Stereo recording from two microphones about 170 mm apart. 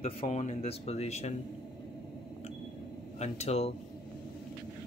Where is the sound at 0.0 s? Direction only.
40° left (ahead or behind).